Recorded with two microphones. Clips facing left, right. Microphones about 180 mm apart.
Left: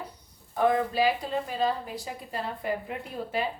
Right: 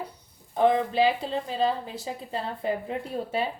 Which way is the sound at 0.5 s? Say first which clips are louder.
Right 2 dB; 25° right (ahead or behind).